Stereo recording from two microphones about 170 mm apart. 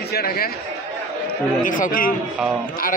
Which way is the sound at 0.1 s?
60° left (ahead or behind).